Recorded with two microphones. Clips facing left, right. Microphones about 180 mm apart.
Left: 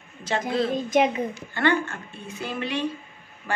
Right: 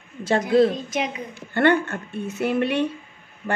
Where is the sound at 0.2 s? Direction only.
50° right (ahead or behind).